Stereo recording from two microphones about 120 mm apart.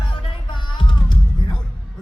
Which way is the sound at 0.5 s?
40° left (ahead or behind).